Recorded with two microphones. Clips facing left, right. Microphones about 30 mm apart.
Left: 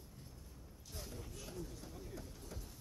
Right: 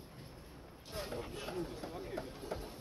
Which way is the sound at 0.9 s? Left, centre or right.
Right.